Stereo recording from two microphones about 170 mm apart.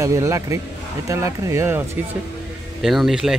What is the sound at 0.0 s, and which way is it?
Speech, 20° right (ahead or behind).